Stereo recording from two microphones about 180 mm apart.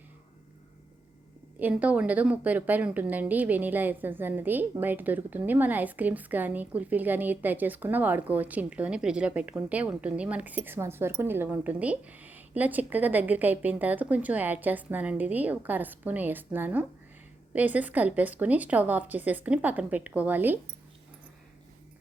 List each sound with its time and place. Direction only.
1.5 s a woman's voice: 10° right (ahead or behind)